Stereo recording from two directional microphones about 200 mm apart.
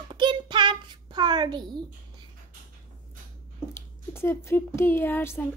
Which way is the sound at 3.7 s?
15° left (ahead or behind).